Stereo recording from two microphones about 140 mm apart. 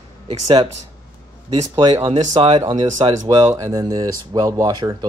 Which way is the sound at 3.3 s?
25° right (ahead or behind).